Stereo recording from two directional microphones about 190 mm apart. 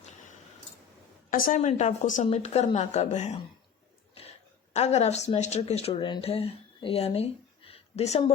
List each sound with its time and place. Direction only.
1.3 s a woman's voice: 45° left (ahead or behind)
4.7 s speech: 35° left (ahead or behind)